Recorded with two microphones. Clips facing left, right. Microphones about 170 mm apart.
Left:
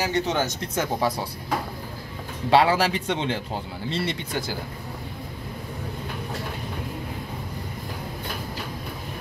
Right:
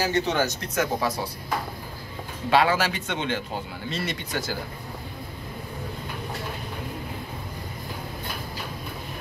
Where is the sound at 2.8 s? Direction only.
30° left (ahead or behind).